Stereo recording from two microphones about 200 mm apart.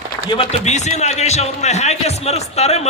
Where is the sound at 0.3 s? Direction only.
30° left (ahead or behind).